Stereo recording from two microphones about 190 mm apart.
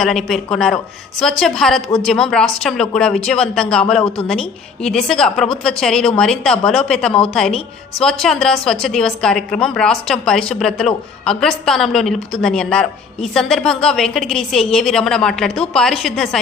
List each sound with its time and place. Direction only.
0.0 s a woman's voice: centre (ahead or behind)